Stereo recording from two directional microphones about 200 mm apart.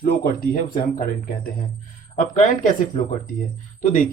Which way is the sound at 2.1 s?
40° left (ahead or behind).